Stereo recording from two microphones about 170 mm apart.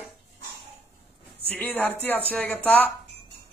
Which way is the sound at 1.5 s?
10° left (ahead or behind).